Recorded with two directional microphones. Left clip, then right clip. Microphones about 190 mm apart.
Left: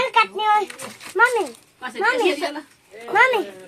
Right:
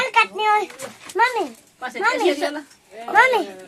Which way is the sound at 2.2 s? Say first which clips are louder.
Right 1 dB; 15° right (ahead or behind).